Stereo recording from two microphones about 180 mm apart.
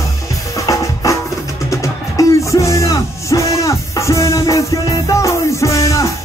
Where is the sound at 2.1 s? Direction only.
15° left (ahead or behind).